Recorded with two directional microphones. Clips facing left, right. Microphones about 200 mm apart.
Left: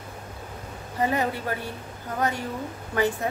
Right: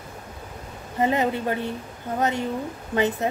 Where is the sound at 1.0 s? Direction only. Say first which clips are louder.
Right 3 dB; 20° right (ahead or behind).